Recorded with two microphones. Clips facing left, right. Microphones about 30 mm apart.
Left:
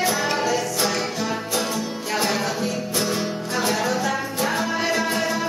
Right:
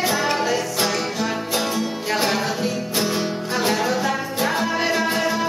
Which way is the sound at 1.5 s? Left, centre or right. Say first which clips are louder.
Right 2 dB; centre.